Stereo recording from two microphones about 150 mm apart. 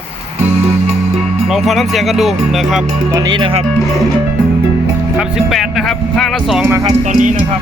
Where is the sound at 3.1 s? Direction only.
25° right (ahead or behind).